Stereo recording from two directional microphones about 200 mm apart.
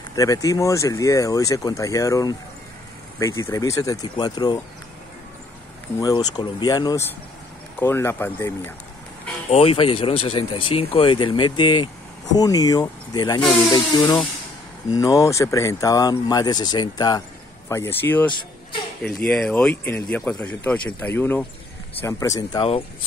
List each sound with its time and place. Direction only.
0.1 s speech: 15° left (ahead or behind)
5.9 s speech: 20° left (ahead or behind)
9.5 s speech: 30° left (ahead or behind)